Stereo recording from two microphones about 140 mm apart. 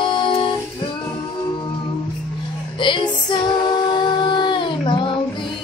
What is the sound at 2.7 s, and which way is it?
Music, 35° left (ahead or behind).